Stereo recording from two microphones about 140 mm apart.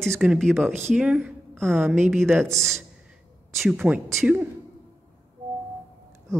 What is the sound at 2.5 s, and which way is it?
Speech, 5° left (ahead or behind).